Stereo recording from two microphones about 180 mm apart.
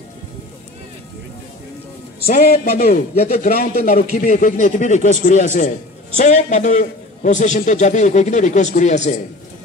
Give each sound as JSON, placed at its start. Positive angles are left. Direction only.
{"t": 2.2, "sound": "a man's voice", "side_deg": 55}
{"t": 3.9, "sound": "a man's voice", "side_deg": 40}